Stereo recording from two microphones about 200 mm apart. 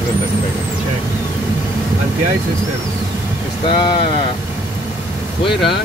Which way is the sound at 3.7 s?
25° left (ahead or behind).